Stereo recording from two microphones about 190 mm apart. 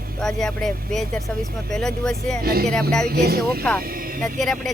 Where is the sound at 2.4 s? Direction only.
55° right (ahead or behind).